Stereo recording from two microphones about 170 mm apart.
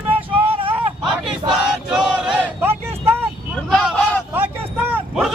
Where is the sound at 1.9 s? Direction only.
5° right (ahead or behind).